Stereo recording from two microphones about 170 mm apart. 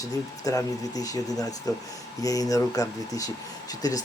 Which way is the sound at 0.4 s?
20° left (ahead or behind).